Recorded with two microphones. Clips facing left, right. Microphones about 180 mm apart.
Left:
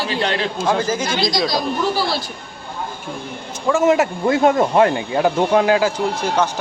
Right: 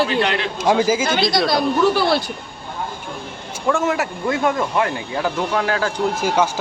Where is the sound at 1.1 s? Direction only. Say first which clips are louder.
Right 2 dB; 60° right (ahead or behind).